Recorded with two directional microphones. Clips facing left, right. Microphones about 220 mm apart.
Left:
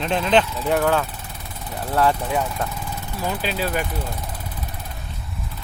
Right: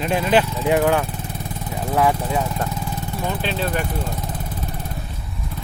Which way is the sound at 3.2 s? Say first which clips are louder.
Even; centre (ahead or behind).